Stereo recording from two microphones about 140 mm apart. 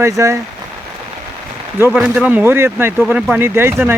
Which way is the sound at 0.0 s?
20° right (ahead or behind).